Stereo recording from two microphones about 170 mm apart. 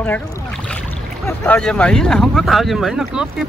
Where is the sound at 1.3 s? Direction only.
5° left (ahead or behind).